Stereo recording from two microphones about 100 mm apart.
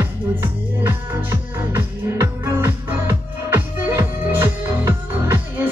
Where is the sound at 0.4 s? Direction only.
20° right (ahead or behind).